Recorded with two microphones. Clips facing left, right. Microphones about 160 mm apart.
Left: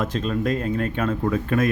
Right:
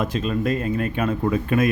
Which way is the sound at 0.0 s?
5° right (ahead or behind).